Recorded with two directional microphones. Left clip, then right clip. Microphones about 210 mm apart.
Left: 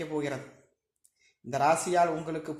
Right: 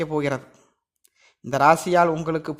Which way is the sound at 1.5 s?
55° right (ahead or behind).